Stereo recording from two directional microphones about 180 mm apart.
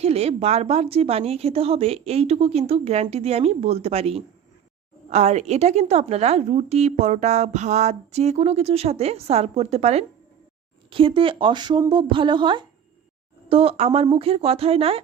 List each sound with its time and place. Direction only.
0.0 s a woman's voice: 35° right (ahead or behind)